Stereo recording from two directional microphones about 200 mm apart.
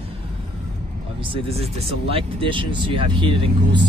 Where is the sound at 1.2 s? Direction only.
25° right (ahead or behind).